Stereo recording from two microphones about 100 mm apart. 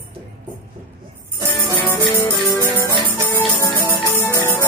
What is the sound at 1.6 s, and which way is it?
Music, 20° left (ahead or behind).